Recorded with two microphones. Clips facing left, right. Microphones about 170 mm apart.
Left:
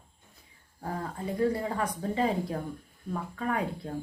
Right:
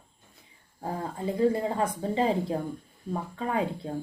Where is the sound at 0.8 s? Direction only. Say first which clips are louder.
Right 2 dB; 25° right (ahead or behind).